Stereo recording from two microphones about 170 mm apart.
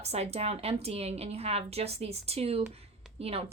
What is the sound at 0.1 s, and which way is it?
A woman's voice, 40° right (ahead or behind).